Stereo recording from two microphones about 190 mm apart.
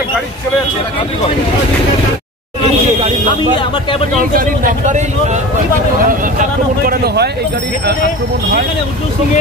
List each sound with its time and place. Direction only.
4.3 s speech: 45° right (ahead or behind)